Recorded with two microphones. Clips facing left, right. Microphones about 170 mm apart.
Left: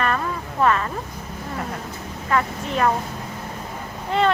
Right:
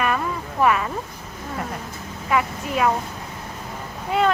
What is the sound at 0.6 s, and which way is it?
Speech, 10° right (ahead or behind).